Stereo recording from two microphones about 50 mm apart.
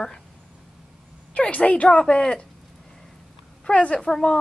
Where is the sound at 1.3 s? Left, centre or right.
Left.